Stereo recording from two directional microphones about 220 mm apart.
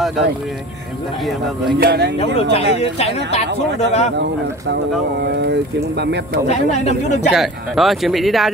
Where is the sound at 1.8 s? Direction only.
45° right (ahead or behind).